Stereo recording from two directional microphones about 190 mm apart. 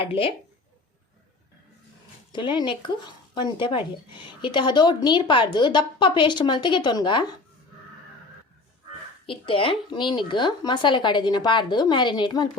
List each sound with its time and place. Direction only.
0.0 s a woman's voice: 30° left (ahead or behind)
2.3 s a woman's voice: 25° left (ahead or behind)
9.2 s a woman's voice: 30° left (ahead or behind)